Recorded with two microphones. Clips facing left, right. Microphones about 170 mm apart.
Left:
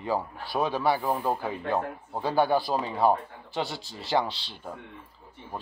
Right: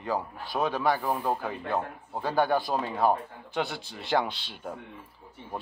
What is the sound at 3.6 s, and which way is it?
Speech, 55° right (ahead or behind).